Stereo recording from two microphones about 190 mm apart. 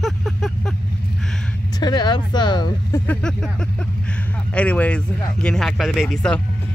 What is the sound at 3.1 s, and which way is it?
Speech, 5° left (ahead or behind).